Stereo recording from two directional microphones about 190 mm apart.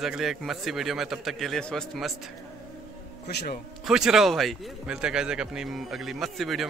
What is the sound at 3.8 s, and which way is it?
A man's voice, centre (ahead or behind).